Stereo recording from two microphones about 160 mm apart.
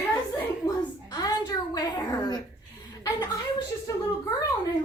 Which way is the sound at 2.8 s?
25° left (ahead or behind).